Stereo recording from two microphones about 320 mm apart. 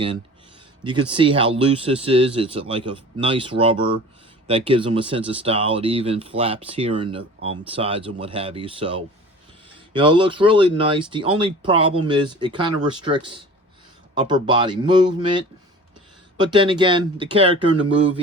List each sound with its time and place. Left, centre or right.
0.9 s speech: centre